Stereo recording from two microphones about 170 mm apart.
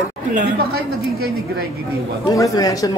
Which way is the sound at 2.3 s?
20° left (ahead or behind).